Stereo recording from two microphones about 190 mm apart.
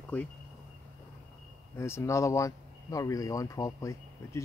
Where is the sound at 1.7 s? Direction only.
15° left (ahead or behind).